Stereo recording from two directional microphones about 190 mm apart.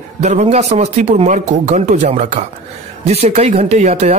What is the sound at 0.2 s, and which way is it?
A man's voice, 35° right (ahead or behind).